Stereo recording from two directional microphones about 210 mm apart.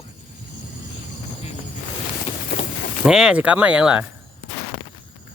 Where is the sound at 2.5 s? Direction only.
50° left (ahead or behind).